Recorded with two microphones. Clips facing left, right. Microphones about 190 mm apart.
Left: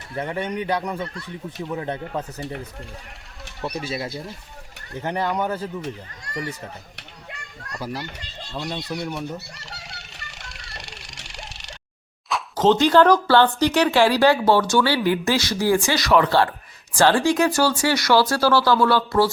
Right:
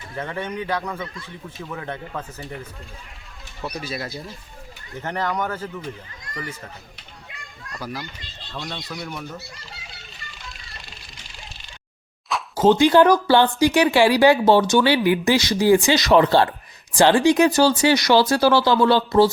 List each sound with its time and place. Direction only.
0.2 s speech: 15° left (ahead or behind)
3.6 s speech: 25° left (ahead or behind)
5.0 s speech: 10° left (ahead or behind)
9.0 s speech: 15° left (ahead or behind)
9.6 s vehicle: 70° left (ahead or behind)
12.3 s speech: 10° right (ahead or behind)